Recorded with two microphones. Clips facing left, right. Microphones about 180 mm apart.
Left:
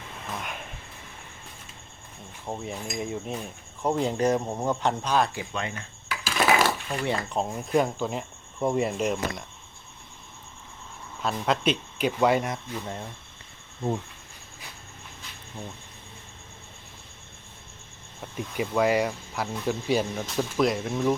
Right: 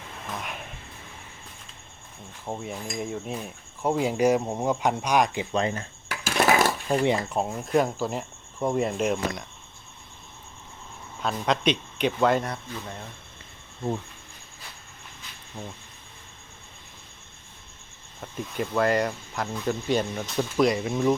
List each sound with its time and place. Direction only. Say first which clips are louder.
0.3 s speech: even; centre (ahead or behind)
2.5 s speech: even; centre (ahead or behind); by 5.5 s 15° right (ahead or behind)
5.5 s a sound: right 8 dB; 35° right (ahead or behind)
6.1 s a sound: right 1 dB; 50° right (ahead or behind)
7.0 s speech: right 4 dB; 15° right (ahead or behind)
7.3 s speech: right 1 dB; 5° right (ahead or behind)
11.2 s speech: right 1 dB; centre (ahead or behind)
18.2 s speech: even; 5° left (ahead or behind)